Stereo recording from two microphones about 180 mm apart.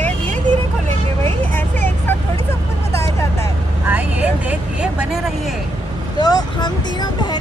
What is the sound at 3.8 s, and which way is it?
Vehicle, 10° right (ahead or behind).